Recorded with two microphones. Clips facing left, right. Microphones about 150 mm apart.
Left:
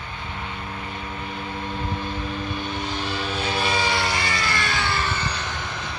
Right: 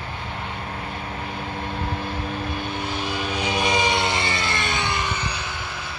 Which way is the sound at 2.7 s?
10° right (ahead or behind).